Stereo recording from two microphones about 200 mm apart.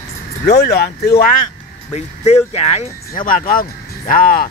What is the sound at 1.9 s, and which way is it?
Speech, 30° left (ahead or behind).